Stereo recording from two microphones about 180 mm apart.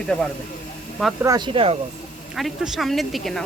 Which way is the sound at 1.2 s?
25° right (ahead or behind).